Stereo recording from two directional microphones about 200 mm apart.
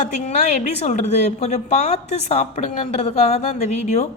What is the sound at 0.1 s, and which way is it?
A woman's voice, 35° left (ahead or behind).